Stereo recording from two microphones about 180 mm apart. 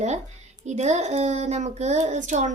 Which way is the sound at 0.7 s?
40° right (ahead or behind).